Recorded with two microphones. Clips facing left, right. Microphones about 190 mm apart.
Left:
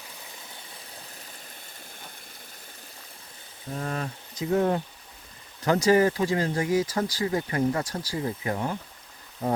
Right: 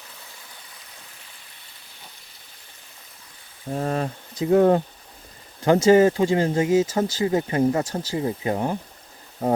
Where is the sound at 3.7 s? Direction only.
35° right (ahead or behind).